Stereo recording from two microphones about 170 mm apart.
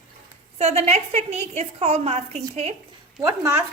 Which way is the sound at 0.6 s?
40° right (ahead or behind).